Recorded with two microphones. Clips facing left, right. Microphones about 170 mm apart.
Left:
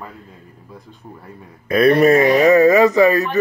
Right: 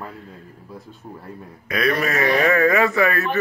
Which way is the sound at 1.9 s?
35° left (ahead or behind).